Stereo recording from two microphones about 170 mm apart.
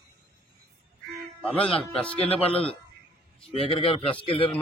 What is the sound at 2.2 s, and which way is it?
A man's voice, 35° left (ahead or behind).